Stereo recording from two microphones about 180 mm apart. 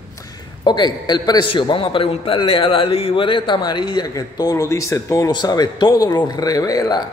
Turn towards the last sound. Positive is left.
turn(degrees=20)  # may be behind; listen again after turning